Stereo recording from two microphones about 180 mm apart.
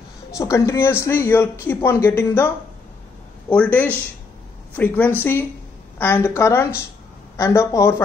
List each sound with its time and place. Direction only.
0.4 s speech: 15° left (ahead or behind)